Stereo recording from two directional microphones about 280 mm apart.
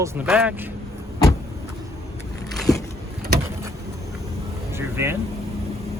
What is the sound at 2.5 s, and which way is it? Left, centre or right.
Vehicle, centre.